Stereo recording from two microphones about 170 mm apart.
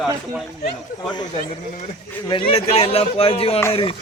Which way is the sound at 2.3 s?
30° left (ahead or behind).